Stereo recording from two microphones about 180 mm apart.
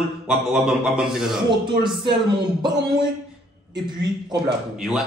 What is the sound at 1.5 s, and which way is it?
Speech, 25° right (ahead or behind).